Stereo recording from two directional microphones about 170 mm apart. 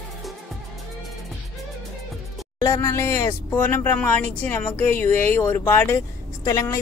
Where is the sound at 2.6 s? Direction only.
20° left (ahead or behind).